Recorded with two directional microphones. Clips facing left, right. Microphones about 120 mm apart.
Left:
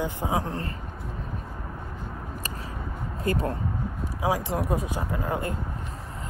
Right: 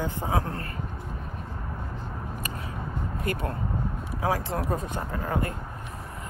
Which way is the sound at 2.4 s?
30° left (ahead or behind).